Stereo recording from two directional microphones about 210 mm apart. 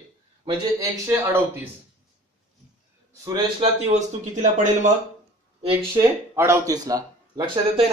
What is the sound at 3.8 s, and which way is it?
Speech, 35° right (ahead or behind).